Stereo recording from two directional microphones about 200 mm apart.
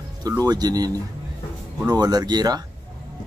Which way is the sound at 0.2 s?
20° right (ahead or behind).